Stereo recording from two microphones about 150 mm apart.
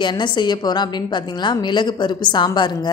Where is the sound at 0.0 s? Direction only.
30° left (ahead or behind).